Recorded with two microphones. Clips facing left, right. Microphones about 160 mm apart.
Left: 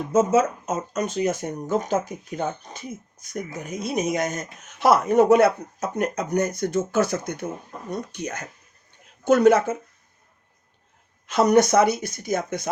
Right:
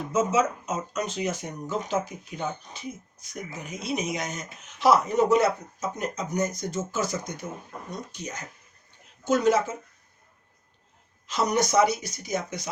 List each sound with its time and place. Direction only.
0.1 s speech: 50° left (ahead or behind)
11.3 s speech: 55° left (ahead or behind)